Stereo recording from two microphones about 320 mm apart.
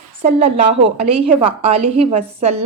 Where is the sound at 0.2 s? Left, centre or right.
Centre.